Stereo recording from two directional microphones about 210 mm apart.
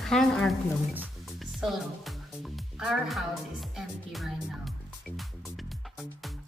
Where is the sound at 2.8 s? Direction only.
Centre (ahead or behind).